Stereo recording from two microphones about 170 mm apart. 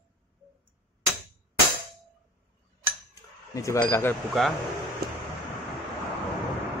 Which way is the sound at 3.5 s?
15° left (ahead or behind).